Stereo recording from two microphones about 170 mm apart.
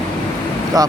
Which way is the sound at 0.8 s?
20° right (ahead or behind).